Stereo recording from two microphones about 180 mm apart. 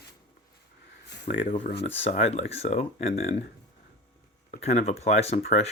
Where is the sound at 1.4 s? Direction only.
45° left (ahead or behind).